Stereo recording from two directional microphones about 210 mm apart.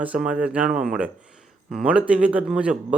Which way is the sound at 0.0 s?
5° right (ahead or behind).